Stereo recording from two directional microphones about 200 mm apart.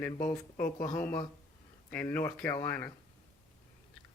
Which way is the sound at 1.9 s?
10° left (ahead or behind).